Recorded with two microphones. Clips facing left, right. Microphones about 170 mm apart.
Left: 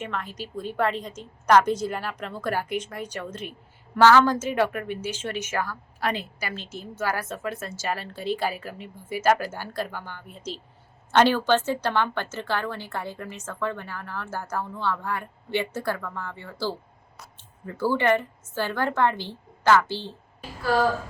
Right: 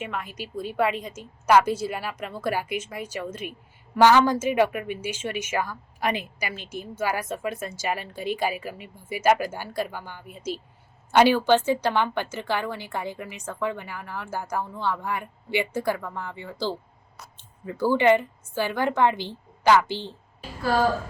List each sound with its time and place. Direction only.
0.0 s a woman's voice: 10° right (ahead or behind)